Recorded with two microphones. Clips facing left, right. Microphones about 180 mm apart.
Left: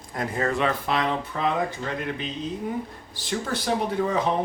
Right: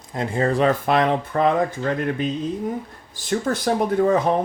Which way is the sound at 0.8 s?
55° right (ahead or behind).